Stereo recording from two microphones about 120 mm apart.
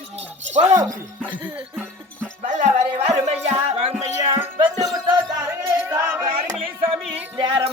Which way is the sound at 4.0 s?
50° right (ahead or behind).